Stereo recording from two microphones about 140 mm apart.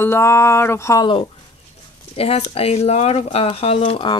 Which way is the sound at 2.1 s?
45° left (ahead or behind).